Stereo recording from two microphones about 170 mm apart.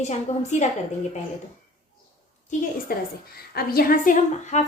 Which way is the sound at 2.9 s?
60° left (ahead or behind).